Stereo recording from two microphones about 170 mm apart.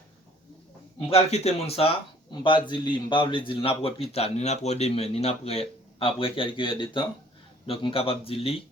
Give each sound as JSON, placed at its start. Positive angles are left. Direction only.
{"t": 0.9, "sound": "a man's voice", "side_deg": 35}